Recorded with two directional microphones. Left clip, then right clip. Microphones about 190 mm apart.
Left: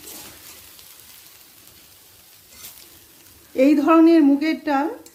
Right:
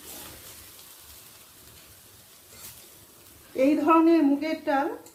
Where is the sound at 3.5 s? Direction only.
55° left (ahead or behind).